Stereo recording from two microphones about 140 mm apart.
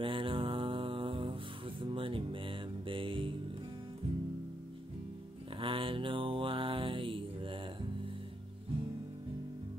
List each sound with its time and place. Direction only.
0.0 s mantra: 40° right (ahead or behind)
5.6 s mantra: 40° right (ahead or behind)